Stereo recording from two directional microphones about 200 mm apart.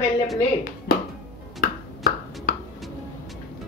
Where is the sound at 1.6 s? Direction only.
50° left (ahead or behind).